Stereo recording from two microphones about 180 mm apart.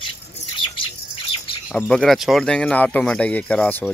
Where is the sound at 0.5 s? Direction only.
30° left (ahead or behind).